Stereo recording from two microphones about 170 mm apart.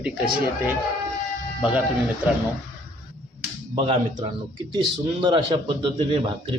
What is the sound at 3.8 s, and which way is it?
A man's voice, 35° right (ahead or behind).